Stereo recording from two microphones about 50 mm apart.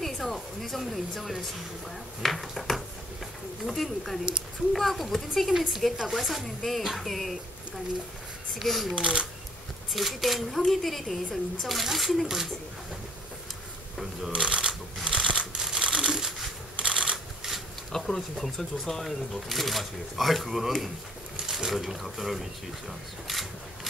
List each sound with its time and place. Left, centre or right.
0.0 s speech: centre
8.5 s speech: centre
8.9 s speech: centre
9.9 s speech: centre
14.3 s shuffling cards: centre
15.2 s computer keyboard: centre
16.7 s shuffling cards: centre
17.9 s a sound: centre
18.3 s speech: centre